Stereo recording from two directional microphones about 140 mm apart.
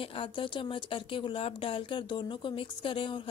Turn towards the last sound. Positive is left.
turn(degrees=35)  # may be behind; listen again after turning